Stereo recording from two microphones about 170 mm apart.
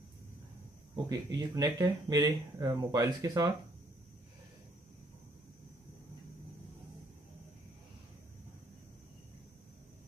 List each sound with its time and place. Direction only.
0.9 s speech: 20° right (ahead or behind)